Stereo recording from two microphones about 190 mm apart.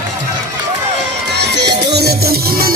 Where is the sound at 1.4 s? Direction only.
60° right (ahead or behind).